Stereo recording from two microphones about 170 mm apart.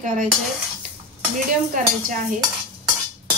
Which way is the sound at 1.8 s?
50° right (ahead or behind).